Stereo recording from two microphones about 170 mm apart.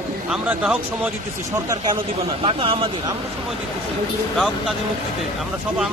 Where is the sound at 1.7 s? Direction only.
25° right (ahead or behind).